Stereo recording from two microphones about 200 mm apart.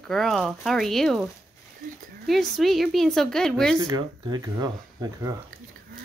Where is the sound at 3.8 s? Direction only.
20° right (ahead or behind).